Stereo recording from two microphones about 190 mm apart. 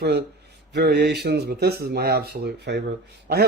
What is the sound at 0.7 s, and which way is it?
Speech, 60° right (ahead or behind).